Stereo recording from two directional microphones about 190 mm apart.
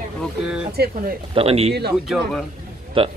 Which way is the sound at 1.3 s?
30° right (ahead or behind).